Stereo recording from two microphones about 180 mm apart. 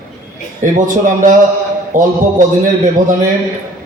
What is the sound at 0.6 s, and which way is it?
A man's voice, 45° right (ahead or behind).